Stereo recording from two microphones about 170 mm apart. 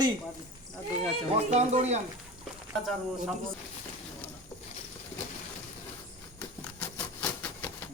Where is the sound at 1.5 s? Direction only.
40° right (ahead or behind).